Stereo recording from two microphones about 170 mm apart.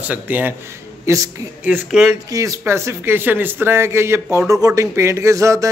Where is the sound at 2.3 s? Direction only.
20° right (ahead or behind).